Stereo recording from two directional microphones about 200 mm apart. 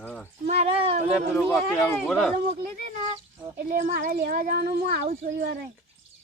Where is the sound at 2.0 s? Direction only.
Centre (ahead or behind).